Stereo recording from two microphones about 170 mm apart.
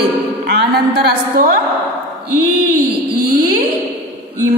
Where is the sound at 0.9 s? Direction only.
70° right (ahead or behind).